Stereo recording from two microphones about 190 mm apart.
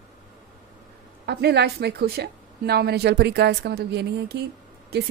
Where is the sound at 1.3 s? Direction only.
60° right (ahead or behind).